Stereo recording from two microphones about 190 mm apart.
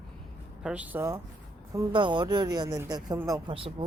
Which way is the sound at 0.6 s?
5° right (ahead or behind).